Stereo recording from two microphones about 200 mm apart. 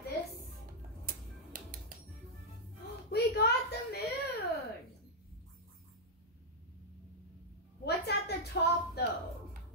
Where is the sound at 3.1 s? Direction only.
55° left (ahead or behind).